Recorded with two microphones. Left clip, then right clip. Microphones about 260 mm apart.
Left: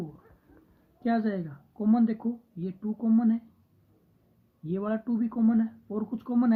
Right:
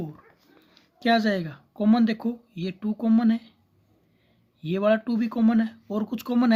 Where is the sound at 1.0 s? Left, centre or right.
Right.